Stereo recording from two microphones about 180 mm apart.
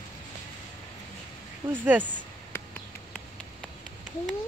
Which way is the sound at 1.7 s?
10° right (ahead or behind).